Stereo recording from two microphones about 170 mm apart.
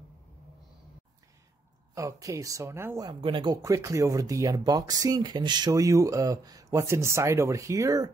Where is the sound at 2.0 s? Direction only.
20° right (ahead or behind).